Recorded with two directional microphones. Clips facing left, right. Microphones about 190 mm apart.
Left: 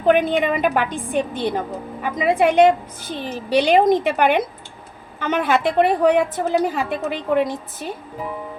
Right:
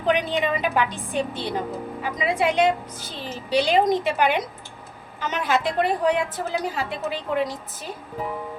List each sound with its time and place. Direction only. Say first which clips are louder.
0.0 s a woman's voice: left 6 dB; 55° left (ahead or behind)